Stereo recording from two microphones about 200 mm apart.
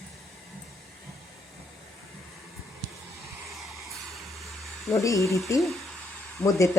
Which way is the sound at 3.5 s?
Centre (ahead or behind).